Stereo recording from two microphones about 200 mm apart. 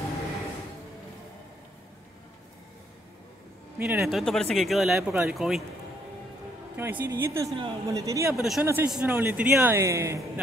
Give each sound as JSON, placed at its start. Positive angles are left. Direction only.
{"t": 3.7, "sound": "speech", "side_deg": -5}
{"t": 6.8, "sound": "a man's voice", "side_deg": -10}
{"t": 8.4, "sound": "a man's voice", "side_deg": 0}